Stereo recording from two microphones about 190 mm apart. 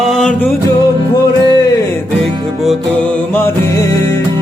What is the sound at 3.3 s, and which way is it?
Music, 10° left (ahead or behind).